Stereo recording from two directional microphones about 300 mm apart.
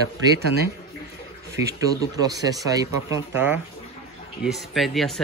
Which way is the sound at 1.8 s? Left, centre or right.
Centre.